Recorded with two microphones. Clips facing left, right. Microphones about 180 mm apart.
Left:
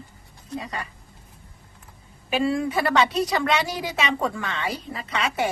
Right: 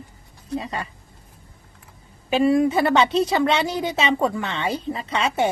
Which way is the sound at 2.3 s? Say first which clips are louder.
Right 6 dB; 25° right (ahead or behind).